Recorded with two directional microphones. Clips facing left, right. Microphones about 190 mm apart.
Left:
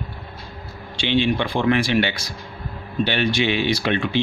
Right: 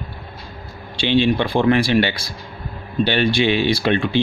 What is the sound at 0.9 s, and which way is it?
Speech, 35° right (ahead or behind).